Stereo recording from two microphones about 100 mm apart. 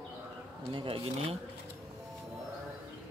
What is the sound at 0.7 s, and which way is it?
Speech, 60° right (ahead or behind).